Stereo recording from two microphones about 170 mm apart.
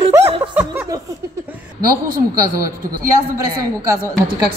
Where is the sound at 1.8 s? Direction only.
60° right (ahead or behind).